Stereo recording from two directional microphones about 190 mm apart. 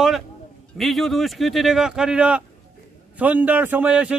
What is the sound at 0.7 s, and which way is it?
A man's voice, centre (ahead or behind).